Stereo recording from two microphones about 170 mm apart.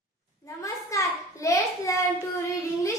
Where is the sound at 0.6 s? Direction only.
20° left (ahead or behind).